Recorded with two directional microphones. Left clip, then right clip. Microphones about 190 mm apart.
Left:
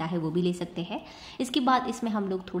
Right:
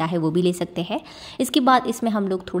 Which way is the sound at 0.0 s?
50° right (ahead or behind).